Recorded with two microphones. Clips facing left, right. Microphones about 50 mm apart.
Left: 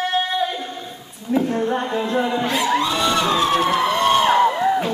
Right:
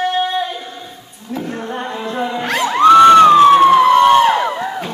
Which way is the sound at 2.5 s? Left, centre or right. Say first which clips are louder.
Right 16 dB; right.